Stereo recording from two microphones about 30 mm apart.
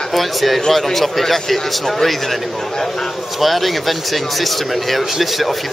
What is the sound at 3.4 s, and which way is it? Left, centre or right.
Speech, centre.